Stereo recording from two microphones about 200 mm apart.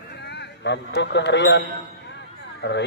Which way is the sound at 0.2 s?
55° left (ahead or behind).